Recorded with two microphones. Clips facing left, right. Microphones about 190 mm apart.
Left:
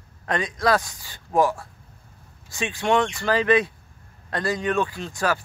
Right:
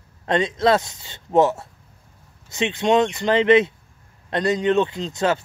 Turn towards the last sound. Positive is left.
turn(degrees=-20)  # may be behind; listen again after turning